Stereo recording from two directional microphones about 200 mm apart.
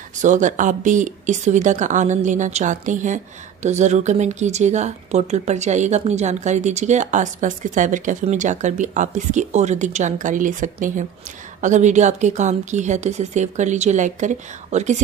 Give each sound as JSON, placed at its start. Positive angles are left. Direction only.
{"t": 0.2, "sound": "speech", "side_deg": -40}